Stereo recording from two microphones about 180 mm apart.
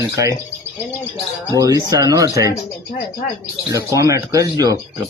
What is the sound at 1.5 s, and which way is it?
Speech, 20° right (ahead or behind).